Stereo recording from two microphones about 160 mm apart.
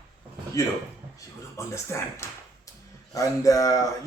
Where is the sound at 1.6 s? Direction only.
20° left (ahead or behind).